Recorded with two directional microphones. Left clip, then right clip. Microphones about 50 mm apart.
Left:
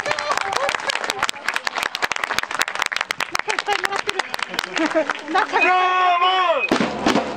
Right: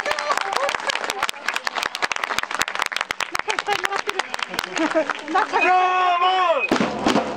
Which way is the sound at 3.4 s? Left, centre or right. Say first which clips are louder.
Left 1 dB; left.